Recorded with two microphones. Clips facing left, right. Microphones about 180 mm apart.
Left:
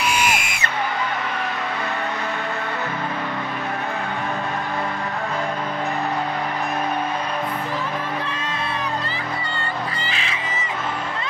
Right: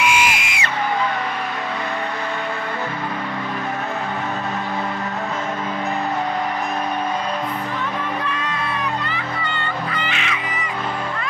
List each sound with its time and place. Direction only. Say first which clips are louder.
0.0 s music: right 2 dB; 40° left (ahead or behind)
9.9 s music: right 3 dB; 35° left (ahead or behind)